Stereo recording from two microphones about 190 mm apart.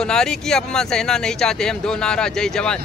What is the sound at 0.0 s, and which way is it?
Speech, 5° left (ahead or behind).